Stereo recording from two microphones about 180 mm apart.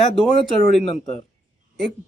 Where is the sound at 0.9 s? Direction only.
40° left (ahead or behind).